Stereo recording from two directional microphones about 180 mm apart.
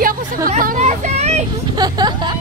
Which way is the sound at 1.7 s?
20° right (ahead or behind).